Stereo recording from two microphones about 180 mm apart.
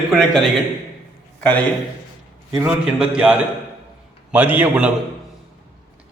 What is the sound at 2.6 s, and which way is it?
A man's voice, 5° right (ahead or behind).